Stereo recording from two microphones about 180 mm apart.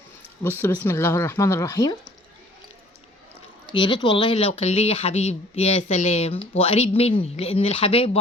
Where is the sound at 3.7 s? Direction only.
25° left (ahead or behind).